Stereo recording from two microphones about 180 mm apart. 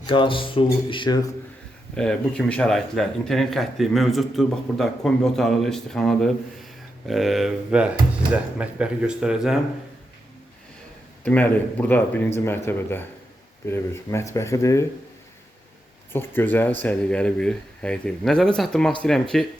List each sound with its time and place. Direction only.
0.0 s speech: 25° left (ahead or behind)
2.0 s speech: 5° left (ahead or behind)
11.2 s speech: 10° left (ahead or behind)
16.1 s speech: 10° left (ahead or behind)